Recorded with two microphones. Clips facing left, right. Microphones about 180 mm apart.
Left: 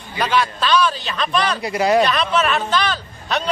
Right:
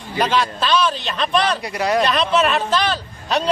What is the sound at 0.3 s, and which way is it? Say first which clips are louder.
A man's voice: left 3 dB; 30° right (ahead or behind).